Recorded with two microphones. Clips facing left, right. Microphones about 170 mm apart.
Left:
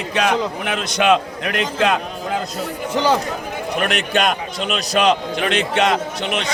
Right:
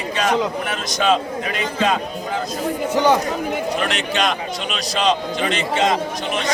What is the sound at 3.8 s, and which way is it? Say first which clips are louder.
A man's voice: left 2 dB; 55° left (ahead or behind).